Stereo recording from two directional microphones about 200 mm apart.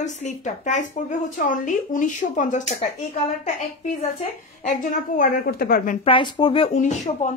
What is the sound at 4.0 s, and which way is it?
A woman's voice, 35° left (ahead or behind).